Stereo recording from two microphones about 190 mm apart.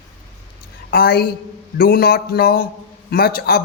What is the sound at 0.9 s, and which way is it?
A man's voice, 55° left (ahead or behind).